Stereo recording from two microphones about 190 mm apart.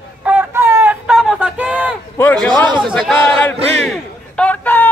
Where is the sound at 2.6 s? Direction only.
25° right (ahead or behind).